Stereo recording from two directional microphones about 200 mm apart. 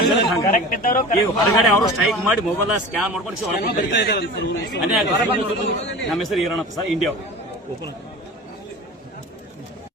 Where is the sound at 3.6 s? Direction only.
60° left (ahead or behind).